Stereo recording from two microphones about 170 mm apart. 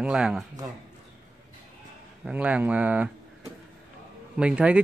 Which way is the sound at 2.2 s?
5° right (ahead or behind).